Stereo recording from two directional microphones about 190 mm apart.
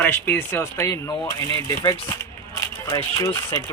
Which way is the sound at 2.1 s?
15° left (ahead or behind).